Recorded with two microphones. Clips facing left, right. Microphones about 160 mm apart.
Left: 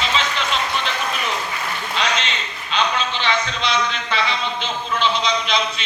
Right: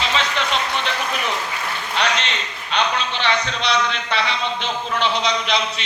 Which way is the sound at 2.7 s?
65° right (ahead or behind).